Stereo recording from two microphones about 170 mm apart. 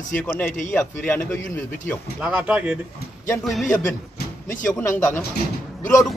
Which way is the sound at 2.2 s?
5° right (ahead or behind).